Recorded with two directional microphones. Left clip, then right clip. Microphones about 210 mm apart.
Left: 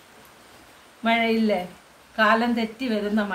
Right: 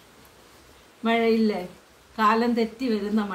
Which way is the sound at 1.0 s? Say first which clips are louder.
Even; 5° left (ahead or behind).